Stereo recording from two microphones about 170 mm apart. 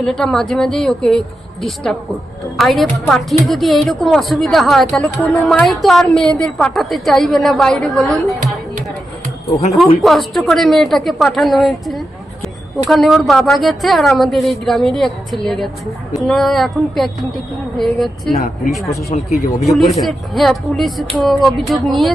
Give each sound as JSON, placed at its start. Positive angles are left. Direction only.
{"t": 0.0, "sound": "a woman's voice", "side_deg": 0}
{"t": 9.5, "sound": "speech", "side_deg": 40}
{"t": 10.0, "sound": "a woman's voice", "side_deg": 0}
{"t": 18.8, "sound": "speech", "side_deg": 20}
{"t": 19.1, "sound": "speech", "side_deg": 40}
{"t": 19.5, "sound": "a woman's voice", "side_deg": 0}